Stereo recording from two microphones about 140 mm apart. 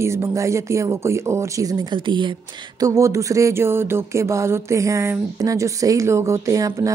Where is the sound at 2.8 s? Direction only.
25° right (ahead or behind).